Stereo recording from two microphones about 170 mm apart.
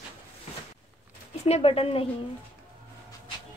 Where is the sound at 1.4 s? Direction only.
35° left (ahead or behind).